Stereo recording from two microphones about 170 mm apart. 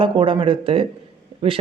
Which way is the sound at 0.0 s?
30° right (ahead or behind).